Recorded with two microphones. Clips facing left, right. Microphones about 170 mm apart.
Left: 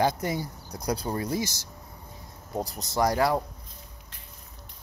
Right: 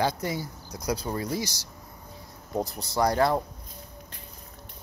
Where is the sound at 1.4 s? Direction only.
50° left (ahead or behind).